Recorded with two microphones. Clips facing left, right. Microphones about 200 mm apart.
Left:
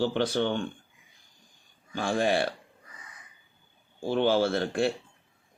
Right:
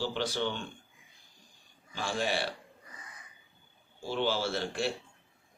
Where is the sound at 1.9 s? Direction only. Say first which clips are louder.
Left 7 dB; 55° left (ahead or behind).